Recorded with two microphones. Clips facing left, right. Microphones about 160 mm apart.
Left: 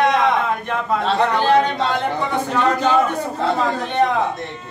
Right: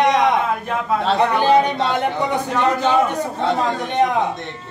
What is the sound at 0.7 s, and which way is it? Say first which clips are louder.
A man's voice: right 1 dB; centre (ahead or behind).